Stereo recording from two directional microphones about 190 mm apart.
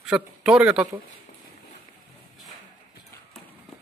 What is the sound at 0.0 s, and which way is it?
Speech, 5° right (ahead or behind).